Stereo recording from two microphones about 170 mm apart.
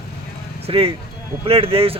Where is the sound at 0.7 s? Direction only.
35° right (ahead or behind).